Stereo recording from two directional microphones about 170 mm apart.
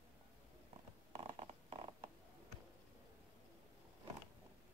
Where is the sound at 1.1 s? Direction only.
35° right (ahead or behind).